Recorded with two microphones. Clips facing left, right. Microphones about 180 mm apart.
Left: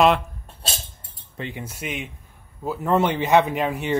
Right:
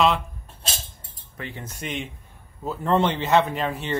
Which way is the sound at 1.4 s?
15° left (ahead or behind).